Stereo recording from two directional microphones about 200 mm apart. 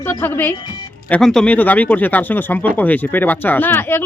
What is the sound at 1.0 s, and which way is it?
A woman's voice, 5° left (ahead or behind).